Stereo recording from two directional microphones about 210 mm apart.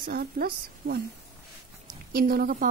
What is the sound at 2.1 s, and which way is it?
Speech, 45° right (ahead or behind).